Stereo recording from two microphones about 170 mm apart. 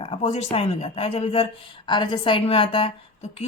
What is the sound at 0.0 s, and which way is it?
A woman's voice, 35° left (ahead or behind).